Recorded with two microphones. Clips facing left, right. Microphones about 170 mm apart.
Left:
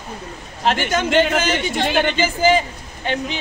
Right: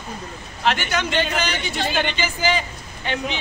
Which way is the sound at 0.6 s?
45° left (ahead or behind).